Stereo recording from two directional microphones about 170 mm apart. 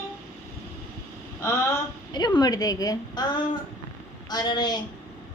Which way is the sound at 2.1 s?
25° left (ahead or behind).